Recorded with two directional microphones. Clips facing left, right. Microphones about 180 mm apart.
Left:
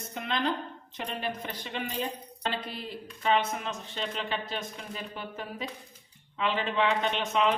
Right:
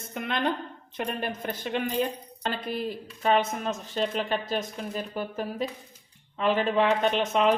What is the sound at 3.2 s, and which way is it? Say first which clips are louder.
Speech: right 3 dB; 45° right (ahead or behind).